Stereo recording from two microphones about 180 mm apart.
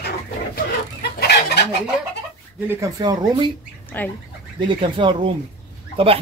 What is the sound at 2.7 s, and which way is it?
Speech, 20° right (ahead or behind).